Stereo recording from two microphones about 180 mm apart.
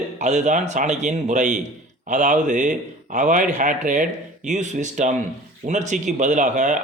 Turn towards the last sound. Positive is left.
turn(degrees=-45)  # may be behind; listen again after turning